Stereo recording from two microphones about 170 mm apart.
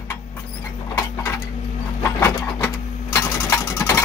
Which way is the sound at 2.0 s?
15° left (ahead or behind).